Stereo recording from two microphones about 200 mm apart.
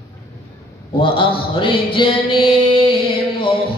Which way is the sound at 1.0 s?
25° left (ahead or behind).